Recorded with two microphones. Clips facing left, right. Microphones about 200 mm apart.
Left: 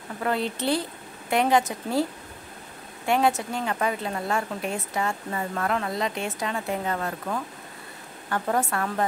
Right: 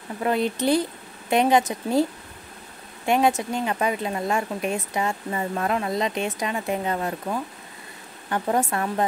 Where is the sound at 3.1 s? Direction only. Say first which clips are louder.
Right 2 dB; 15° right (ahead or behind).